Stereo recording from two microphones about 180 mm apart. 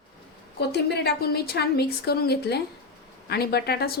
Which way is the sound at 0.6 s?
65° left (ahead or behind).